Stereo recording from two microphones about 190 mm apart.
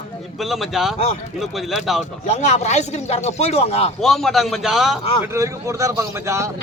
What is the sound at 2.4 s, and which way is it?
Speech, 35° left (ahead or behind).